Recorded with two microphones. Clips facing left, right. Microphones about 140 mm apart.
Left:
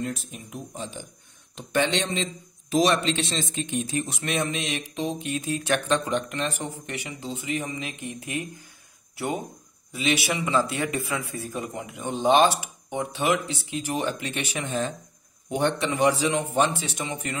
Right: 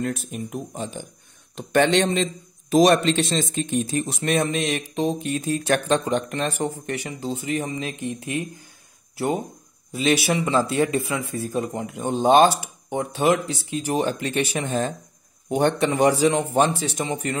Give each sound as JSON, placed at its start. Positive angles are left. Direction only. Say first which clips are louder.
{"t": 0.0, "sound": "speech", "louder": "right 5 dB", "side_deg": -55}
{"t": 9.9, "sound": "speech", "louder": "right 5 dB", "side_deg": -40}
{"t": 11.8, "sound": "speech", "louder": "right 2 dB", "side_deg": -45}